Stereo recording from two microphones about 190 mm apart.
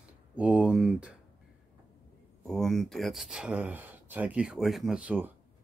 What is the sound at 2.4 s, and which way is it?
Speech, centre (ahead or behind).